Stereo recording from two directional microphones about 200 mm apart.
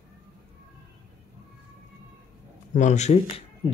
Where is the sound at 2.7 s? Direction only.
35° left (ahead or behind).